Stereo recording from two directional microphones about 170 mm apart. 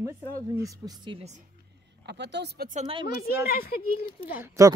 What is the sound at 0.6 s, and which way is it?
Speech, 25° right (ahead or behind).